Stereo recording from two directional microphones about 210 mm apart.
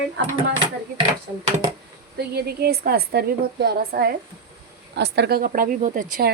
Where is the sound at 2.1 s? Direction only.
50° right (ahead or behind).